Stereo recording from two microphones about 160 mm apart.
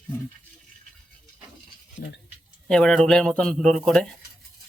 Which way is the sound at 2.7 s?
5° left (ahead or behind).